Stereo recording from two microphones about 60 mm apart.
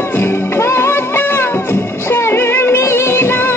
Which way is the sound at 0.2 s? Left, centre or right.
Left.